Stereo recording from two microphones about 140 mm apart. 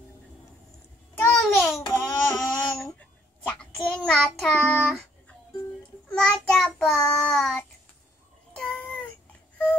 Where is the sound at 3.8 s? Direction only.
5° left (ahead or behind).